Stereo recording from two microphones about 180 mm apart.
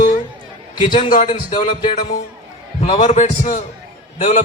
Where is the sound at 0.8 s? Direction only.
25° left (ahead or behind).